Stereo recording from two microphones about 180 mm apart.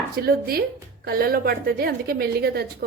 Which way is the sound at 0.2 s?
55° right (ahead or behind).